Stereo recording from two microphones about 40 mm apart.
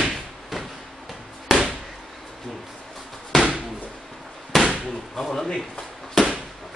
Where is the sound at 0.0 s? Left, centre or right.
Centre.